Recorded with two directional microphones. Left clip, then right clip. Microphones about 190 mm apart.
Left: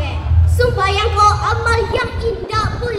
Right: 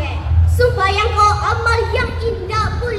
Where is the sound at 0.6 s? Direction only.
60° left (ahead or behind).